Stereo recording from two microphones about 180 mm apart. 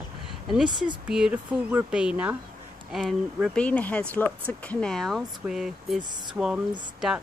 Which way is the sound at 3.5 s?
10° left (ahead or behind).